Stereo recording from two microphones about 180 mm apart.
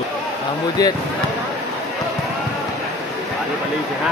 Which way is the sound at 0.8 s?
20° left (ahead or behind).